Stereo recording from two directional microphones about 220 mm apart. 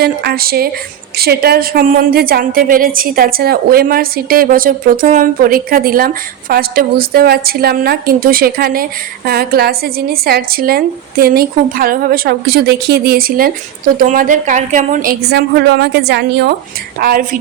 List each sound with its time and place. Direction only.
0.0 s a woman's voice: 45° right (ahead or behind)